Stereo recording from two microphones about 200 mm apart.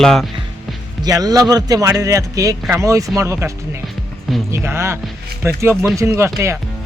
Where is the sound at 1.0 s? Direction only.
20° right (ahead or behind).